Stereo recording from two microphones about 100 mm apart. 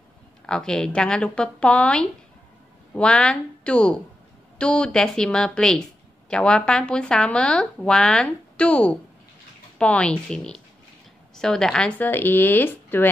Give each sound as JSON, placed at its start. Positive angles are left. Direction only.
{"t": 0.5, "sound": "a woman's voice", "side_deg": 5}
{"t": 12.0, "sound": "speech", "side_deg": 20}